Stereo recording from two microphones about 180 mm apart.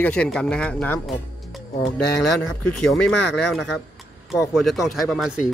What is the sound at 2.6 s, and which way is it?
Speech, 5° left (ahead or behind).